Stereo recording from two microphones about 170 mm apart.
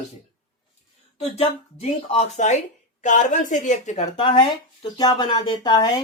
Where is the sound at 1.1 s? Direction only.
35° left (ahead or behind).